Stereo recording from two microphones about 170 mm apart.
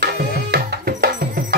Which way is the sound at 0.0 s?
75° right (ahead or behind).